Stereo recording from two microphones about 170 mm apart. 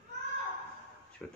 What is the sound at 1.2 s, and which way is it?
Speech, 5° left (ahead or behind).